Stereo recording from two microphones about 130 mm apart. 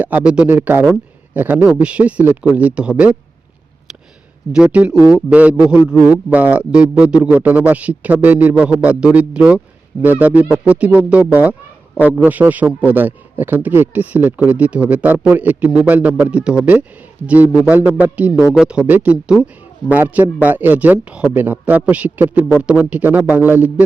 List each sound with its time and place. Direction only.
0.0 s a man's voice: 10° right (ahead or behind)
4.5 s a man's voice: 10° right (ahead or behind)